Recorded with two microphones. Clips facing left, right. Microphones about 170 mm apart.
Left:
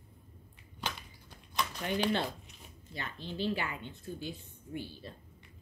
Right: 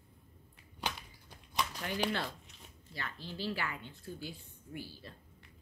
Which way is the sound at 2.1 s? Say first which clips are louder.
Left 5 dB; 15° left (ahead or behind).